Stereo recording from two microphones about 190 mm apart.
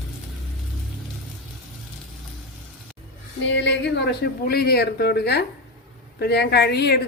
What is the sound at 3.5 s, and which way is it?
Speech, 70° left (ahead or behind).